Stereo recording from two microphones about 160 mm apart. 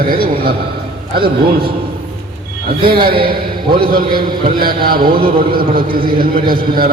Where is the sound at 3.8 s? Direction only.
65° right (ahead or behind).